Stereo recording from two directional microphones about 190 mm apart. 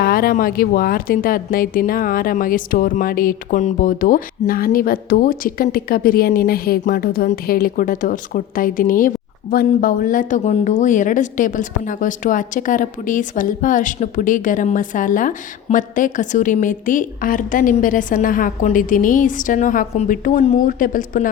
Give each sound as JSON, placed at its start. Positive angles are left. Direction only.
{"t": 0.0, "sound": "a woman's voice", "side_deg": 50}